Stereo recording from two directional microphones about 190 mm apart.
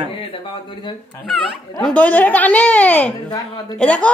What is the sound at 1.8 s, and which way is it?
A woman's voice, 5° left (ahead or behind).